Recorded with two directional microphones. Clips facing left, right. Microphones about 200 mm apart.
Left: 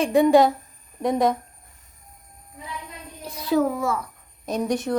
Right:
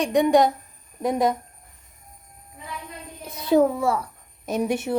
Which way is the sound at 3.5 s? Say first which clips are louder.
Right 3 dB; 30° right (ahead or behind).